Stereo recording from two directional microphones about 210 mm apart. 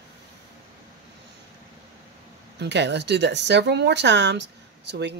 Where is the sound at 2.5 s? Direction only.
55° right (ahead or behind).